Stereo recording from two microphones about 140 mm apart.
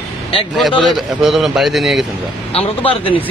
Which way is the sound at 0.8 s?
Centre (ahead or behind).